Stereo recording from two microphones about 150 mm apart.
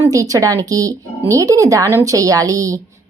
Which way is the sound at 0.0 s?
20° right (ahead or behind).